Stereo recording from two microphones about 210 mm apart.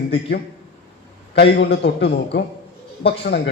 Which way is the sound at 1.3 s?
55° left (ahead or behind).